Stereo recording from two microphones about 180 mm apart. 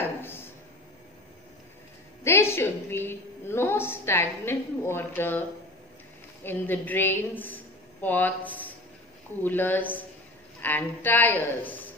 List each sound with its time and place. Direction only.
0.2 s a sound: 10° left (ahead or behind)
2.2 s a woman's voice: 15° left (ahead or behind)
6.4 s a woman's voice: 10° left (ahead or behind)